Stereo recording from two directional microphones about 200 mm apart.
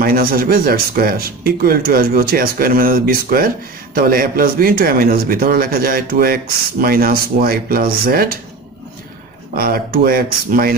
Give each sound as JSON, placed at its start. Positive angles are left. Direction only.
{"t": 0.0, "sound": "speech", "side_deg": -45}
{"t": 9.6, "sound": "speech", "side_deg": -50}